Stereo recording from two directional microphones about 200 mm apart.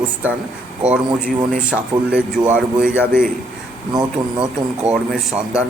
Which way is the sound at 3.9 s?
25° right (ahead or behind).